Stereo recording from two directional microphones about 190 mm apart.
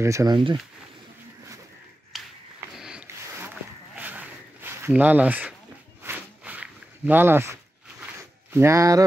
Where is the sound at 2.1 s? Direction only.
Centre (ahead or behind).